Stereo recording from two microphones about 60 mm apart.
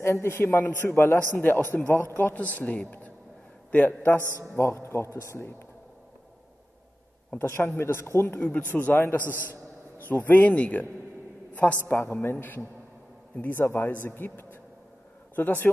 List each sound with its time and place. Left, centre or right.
0.0 s a man's voice: left
4.2 s a man's voice: right
4.6 s speech: left
7.3 s speech: left
8.4 s a man's voice: left
12.0 s a man's voice: left